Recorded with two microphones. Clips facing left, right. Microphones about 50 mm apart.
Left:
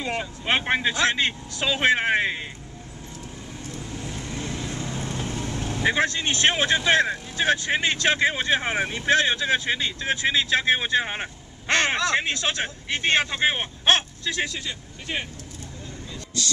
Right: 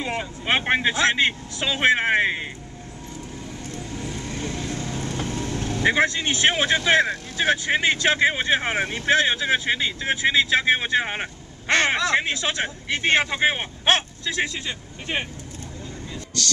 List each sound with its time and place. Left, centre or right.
0.0 s speech: centre
3.9 s vehicle: centre
5.9 s speech: centre
13.8 s speech: right